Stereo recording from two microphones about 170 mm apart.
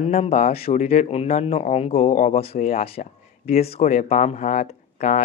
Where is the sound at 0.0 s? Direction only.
40° left (ahead or behind).